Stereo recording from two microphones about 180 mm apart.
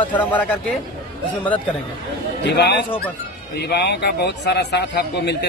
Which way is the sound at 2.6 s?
70° left (ahead or behind).